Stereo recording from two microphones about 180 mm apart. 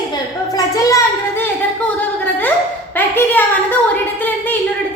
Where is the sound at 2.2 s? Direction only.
10° left (ahead or behind).